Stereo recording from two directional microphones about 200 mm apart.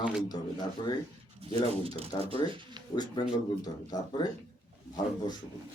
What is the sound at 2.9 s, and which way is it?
Speech, 20° left (ahead or behind).